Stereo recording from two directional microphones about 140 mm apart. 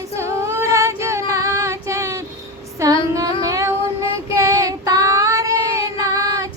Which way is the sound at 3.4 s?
25° right (ahead or behind).